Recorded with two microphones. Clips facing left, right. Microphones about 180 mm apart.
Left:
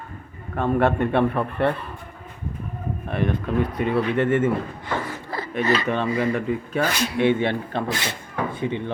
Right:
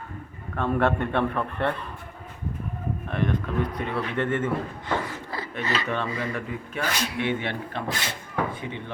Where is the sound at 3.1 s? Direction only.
10° left (ahead or behind).